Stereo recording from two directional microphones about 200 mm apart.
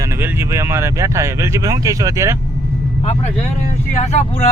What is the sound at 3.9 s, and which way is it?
Speech, 35° left (ahead or behind).